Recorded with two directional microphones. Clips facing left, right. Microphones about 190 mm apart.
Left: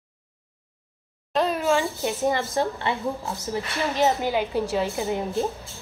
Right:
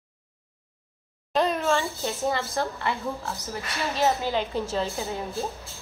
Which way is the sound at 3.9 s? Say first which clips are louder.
Left 2 dB; 15° left (ahead or behind).